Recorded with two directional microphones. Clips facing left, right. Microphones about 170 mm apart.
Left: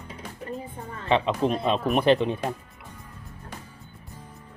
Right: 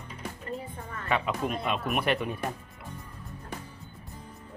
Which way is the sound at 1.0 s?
25° left (ahead or behind).